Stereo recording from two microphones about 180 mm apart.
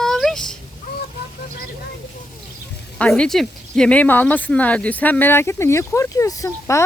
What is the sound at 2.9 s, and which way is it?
Speech, 5° left (ahead or behind).